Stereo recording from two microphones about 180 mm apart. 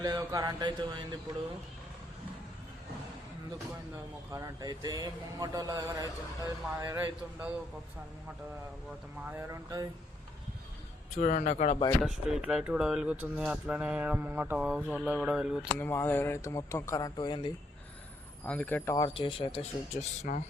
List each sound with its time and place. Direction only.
0.0 s a man's voice: 20° right (ahead or behind)
4.3 s a man's voice: 20° right (ahead or behind)
9.3 s speech: 20° right (ahead or behind)
11.2 s speech: 45° left (ahead or behind)
12.0 s mantra: centre (ahead or behind)
15.8 s speech: 10° left (ahead or behind)
18.4 s speech: 10° left (ahead or behind)
18.9 s speech: 30° left (ahead or behind)
20.3 s speech: 45° left (ahead or behind)